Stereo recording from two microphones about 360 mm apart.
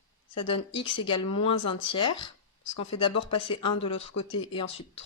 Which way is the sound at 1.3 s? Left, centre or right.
Left.